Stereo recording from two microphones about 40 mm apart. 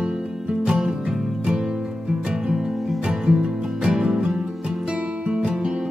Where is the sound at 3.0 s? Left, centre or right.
Right.